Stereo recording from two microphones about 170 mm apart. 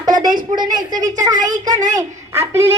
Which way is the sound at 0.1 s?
50° right (ahead or behind).